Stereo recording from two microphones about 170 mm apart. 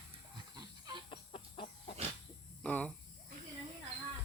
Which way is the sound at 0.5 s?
25° right (ahead or behind).